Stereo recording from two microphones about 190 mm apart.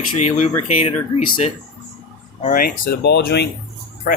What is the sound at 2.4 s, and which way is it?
Speech, 50° left (ahead or behind).